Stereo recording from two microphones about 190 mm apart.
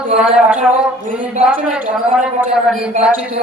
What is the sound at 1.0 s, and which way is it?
Speech, 45° right (ahead or behind).